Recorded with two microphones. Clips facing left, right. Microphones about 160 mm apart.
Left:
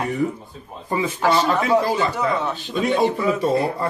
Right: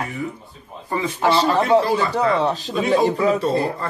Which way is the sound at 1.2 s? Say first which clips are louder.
Right 2 dB; 30° right (ahead or behind).